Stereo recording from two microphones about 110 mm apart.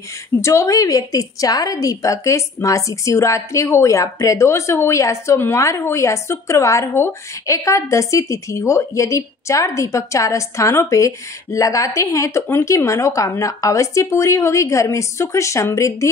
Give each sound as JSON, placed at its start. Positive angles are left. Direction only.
{"t": 0.4, "sound": "a woman's voice", "side_deg": 25}